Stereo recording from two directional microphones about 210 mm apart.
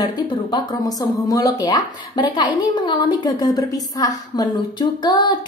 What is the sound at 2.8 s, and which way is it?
A woman's voice, 20° left (ahead or behind).